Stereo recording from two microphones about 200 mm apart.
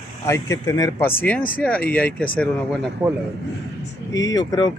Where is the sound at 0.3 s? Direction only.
15° left (ahead or behind).